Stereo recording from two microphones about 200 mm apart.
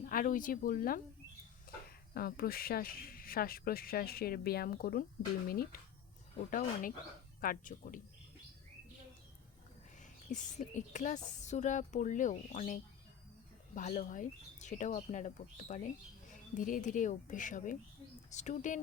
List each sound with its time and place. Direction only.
0.0 s speech: 45° left (ahead or behind)
2.1 s speech: 50° left (ahead or behind)
10.2 s speech: 40° left (ahead or behind)